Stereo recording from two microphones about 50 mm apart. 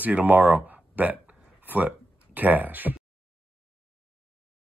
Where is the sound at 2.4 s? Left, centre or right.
Right.